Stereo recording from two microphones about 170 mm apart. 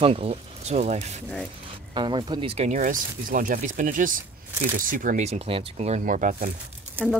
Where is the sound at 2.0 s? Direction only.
25° right (ahead or behind); by 6.5 s 50° right (ahead or behind).